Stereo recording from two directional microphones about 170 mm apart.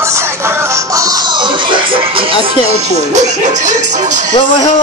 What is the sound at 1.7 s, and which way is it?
Music, 30° right (ahead or behind).